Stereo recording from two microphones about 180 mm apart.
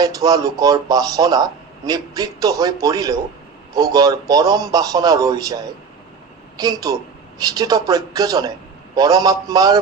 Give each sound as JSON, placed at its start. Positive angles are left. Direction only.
{"t": 0.0, "sound": "a man's voice", "side_deg": -20}